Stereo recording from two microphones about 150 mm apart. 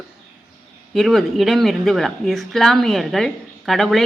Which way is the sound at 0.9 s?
Centre (ahead or behind).